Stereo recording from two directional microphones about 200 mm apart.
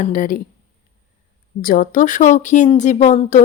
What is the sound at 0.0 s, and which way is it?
Speech, 40° left (ahead or behind).